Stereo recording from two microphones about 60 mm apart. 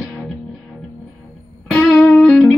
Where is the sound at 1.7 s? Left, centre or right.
Centre.